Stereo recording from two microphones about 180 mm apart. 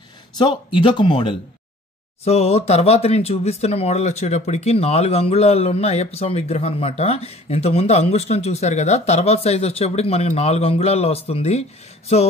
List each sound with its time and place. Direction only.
0.4 s speech: 25° left (ahead or behind)